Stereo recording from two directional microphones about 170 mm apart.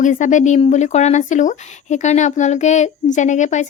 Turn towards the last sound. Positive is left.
turn(degrees=45)  # may be behind; listen again after turning